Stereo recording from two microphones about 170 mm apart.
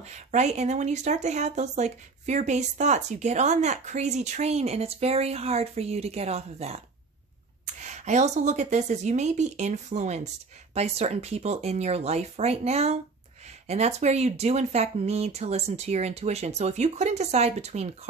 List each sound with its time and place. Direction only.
0.0 s speech: 40° right (ahead or behind)